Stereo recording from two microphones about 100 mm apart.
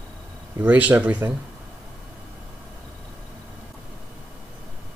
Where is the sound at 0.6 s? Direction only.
15° right (ahead or behind).